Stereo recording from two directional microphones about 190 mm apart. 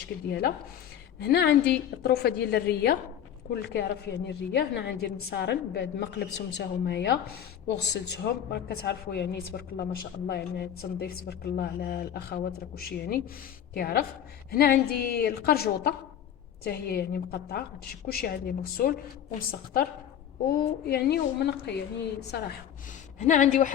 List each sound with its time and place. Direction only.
0.0 s a woman's voice: 60° left (ahead or behind)
23.1 s speech: 40° left (ahead or behind)